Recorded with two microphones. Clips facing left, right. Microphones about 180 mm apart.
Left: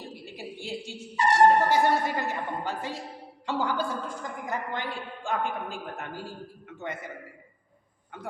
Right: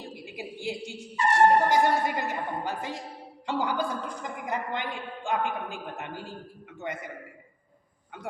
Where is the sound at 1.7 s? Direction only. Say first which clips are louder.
Even; 15° right (ahead or behind).